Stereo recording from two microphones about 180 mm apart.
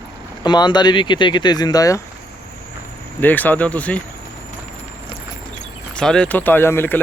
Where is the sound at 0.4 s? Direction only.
25° left (ahead or behind).